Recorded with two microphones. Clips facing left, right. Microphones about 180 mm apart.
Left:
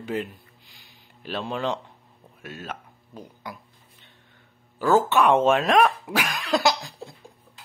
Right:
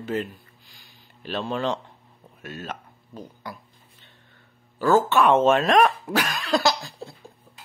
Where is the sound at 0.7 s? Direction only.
20° left (ahead or behind).